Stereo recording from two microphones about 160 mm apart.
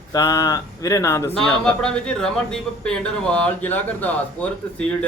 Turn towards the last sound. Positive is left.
turn(degrees=5)  # may be behind; listen again after turning